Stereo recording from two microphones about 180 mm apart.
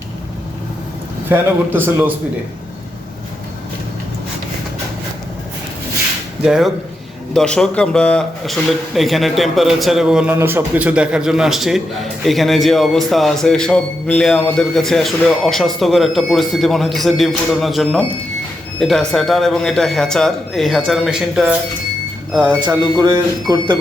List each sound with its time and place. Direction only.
1.3 s a man's voice: 10° right (ahead or behind)
6.4 s a man's voice: centre (ahead or behind)
22.4 s speech: 25° right (ahead or behind)